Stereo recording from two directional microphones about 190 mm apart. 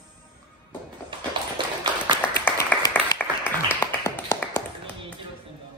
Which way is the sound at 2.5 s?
15° left (ahead or behind).